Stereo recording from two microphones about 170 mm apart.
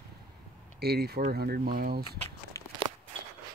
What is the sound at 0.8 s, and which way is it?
Speech, 70° right (ahead or behind).